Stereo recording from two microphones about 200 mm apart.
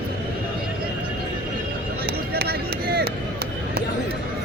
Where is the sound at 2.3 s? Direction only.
50° right (ahead or behind).